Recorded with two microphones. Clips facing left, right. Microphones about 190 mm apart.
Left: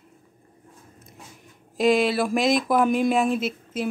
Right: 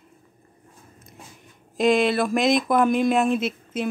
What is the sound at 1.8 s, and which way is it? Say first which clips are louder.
Speech: right 1 dB; 5° left (ahead or behind).